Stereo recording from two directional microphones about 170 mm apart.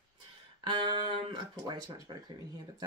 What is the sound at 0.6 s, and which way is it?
Speech, 30° right (ahead or behind).